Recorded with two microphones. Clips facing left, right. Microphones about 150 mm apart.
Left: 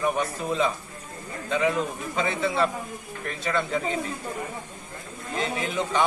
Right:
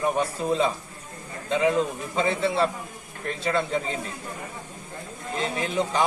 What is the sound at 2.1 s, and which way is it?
A man's voice, 30° right (ahead or behind).